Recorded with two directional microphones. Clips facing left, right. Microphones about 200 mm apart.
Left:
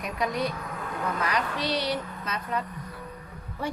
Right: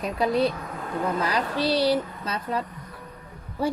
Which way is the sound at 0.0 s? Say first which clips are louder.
Right 6 dB; 30° right (ahead or behind).